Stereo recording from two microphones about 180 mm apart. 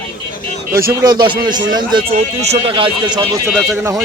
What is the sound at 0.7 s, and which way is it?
Speech, 55° right (ahead or behind).